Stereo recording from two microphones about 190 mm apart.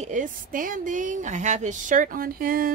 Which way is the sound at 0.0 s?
40° right (ahead or behind).